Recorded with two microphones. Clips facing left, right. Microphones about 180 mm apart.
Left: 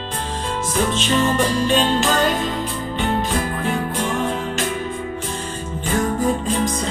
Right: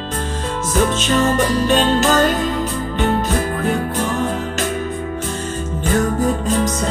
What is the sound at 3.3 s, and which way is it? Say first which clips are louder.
Music: right 3 dB; 45° right (ahead or behind).